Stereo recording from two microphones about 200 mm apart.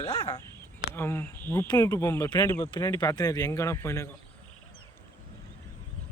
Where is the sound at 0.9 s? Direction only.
10° left (ahead or behind).